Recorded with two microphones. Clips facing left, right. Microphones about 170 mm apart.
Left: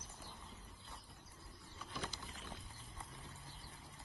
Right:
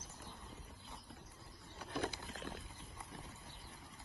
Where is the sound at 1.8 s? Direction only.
60° right (ahead or behind).